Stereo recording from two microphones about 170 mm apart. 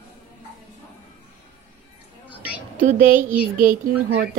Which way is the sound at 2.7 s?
55° right (ahead or behind).